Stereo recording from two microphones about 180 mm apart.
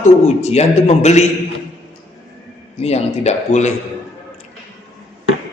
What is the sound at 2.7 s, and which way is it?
Speech, 35° left (ahead or behind).